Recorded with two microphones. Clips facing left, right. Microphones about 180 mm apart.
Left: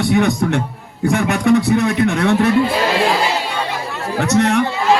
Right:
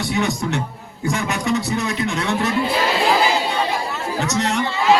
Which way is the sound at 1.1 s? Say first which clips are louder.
Left 7 dB; 60° left (ahead or behind).